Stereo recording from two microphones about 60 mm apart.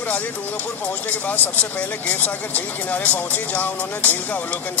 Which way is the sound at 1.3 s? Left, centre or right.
Left.